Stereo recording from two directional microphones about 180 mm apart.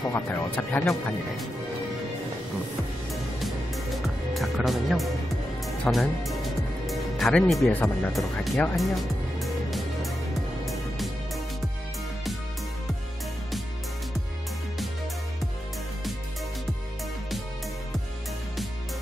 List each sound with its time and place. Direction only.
0.1 s speech: 10° left (ahead or behind)
3.1 s music: centre (ahead or behind)
4.3 s speech: centre (ahead or behind)
6.9 s music: centre (ahead or behind)
8.1 s speech: centre (ahead or behind)
10.6 s music: centre (ahead or behind)